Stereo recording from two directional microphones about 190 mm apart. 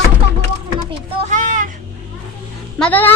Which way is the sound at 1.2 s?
40° right (ahead or behind).